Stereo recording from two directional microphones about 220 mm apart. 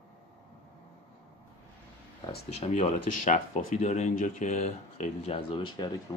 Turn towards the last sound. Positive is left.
turn(degrees=20)  # may be behind; listen again after turning